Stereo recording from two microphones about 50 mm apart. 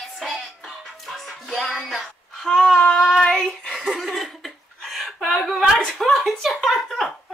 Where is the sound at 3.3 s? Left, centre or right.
Left.